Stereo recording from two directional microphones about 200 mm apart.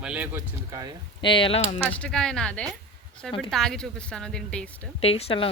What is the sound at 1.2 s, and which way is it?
Speech, 25° left (ahead or behind).